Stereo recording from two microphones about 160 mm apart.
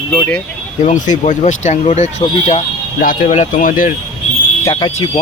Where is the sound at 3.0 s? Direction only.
60° left (ahead or behind).